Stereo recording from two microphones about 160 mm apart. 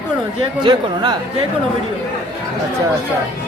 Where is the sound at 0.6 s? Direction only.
30° right (ahead or behind).